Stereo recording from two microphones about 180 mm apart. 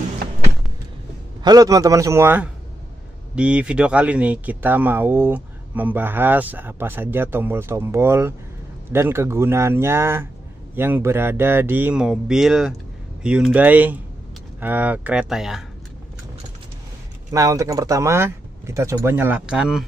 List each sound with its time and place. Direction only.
1.4 s speech: 20° right (ahead or behind); by 15.6 s centre (ahead or behind)
17.3 s speech: 20° right (ahead or behind)